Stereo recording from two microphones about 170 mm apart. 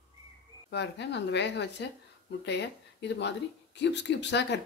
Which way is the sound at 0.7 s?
85° left.